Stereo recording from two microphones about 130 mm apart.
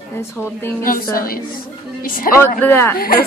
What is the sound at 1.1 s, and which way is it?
A woman's voice, 90° left.